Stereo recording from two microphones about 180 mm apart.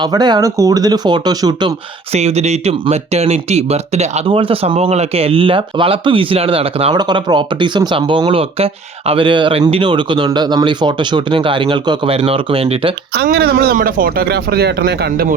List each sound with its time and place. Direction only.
0.0 s speech: 25° right (ahead or behind)
2.1 s speech: 35° right (ahead or behind)
13.1 s speech: 60° right (ahead or behind)